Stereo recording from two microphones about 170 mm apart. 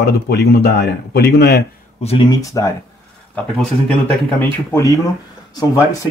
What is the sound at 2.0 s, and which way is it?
Speech, 35° left (ahead or behind).